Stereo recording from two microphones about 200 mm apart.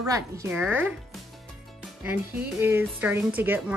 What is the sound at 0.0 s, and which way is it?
Speech, 15° right (ahead or behind).